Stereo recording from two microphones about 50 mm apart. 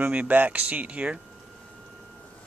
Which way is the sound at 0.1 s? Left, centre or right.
Right.